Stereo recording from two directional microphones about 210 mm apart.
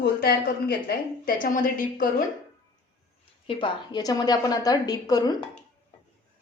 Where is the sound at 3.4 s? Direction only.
20° left (ahead or behind).